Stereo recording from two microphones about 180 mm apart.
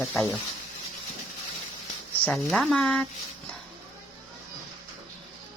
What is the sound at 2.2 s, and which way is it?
Speech, centre (ahead or behind).